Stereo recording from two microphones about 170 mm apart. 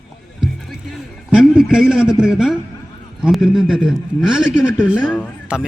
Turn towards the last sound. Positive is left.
turn(degrees=-5)  # may be behind; listen again after turning